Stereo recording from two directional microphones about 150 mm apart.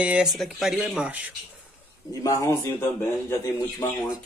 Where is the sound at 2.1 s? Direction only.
20° left (ahead or behind).